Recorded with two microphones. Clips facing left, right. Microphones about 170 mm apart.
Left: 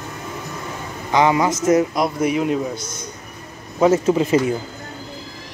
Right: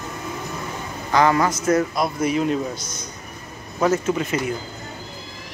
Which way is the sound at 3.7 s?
20° left (ahead or behind).